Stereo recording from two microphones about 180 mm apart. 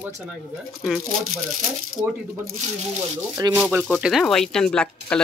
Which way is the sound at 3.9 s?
Centre (ahead or behind).